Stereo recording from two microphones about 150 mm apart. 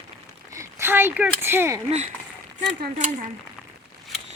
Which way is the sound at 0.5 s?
20° right (ahead or behind).